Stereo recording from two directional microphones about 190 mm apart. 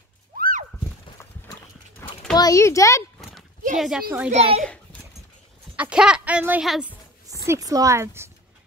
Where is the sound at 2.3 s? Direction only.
15° left (ahead or behind).